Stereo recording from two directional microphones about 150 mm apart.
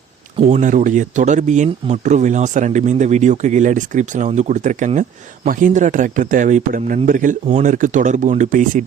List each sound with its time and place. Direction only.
0.5 s speech: 60° right (ahead or behind)